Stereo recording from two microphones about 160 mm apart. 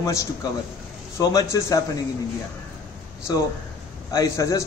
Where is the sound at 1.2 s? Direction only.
25° left (ahead or behind).